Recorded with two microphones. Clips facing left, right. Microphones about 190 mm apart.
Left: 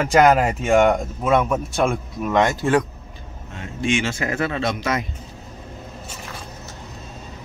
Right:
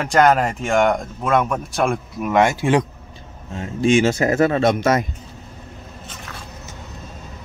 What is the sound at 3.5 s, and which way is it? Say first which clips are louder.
Speech: right 6 dB; 35° right (ahead or behind).